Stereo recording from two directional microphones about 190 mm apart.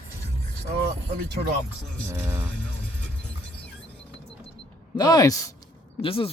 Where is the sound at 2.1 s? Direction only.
10° right (ahead or behind).